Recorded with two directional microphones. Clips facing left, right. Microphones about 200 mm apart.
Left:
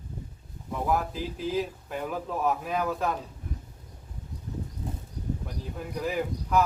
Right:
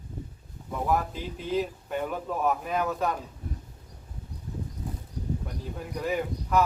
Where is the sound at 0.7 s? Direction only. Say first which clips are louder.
Even; centre (ahead or behind).